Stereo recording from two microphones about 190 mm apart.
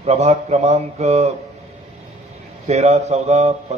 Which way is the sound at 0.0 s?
35° right (ahead or behind).